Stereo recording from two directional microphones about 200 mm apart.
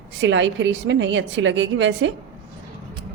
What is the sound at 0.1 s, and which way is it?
A woman's voice, 65° right (ahead or behind).